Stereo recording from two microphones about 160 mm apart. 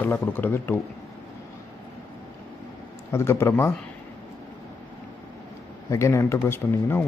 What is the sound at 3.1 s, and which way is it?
Speech, 15° left (ahead or behind).